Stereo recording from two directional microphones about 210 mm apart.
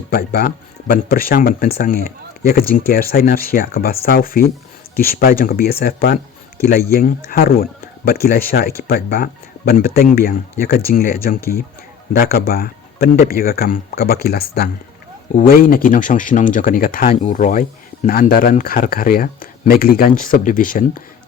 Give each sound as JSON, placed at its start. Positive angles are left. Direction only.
{"t": 0.1, "sound": "speech", "side_deg": 45}